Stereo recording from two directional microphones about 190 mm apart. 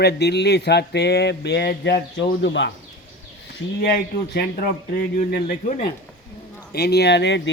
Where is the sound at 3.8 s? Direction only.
60° left (ahead or behind).